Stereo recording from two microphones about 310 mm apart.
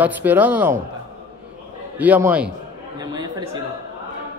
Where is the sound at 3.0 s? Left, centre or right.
Centre.